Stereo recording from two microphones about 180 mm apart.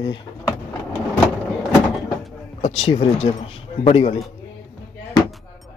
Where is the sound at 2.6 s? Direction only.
35° left (ahead or behind).